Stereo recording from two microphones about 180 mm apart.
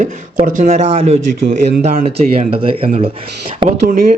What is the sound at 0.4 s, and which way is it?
Speech, 40° right (ahead or behind).